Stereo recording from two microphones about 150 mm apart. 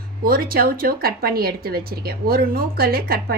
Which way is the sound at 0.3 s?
80° right.